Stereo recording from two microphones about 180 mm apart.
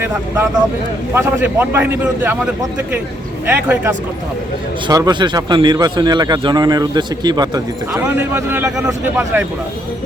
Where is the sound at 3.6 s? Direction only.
10° right (ahead or behind).